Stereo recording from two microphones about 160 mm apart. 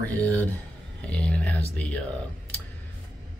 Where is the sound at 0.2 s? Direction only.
10° left (ahead or behind).